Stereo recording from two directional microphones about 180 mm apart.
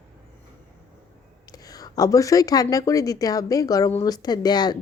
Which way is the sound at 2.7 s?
20° left (ahead or behind).